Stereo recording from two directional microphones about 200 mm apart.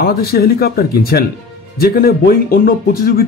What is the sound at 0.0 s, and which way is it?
Speech, 50° left (ahead or behind).